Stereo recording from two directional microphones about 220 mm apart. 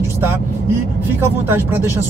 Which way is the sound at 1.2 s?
10° right (ahead or behind).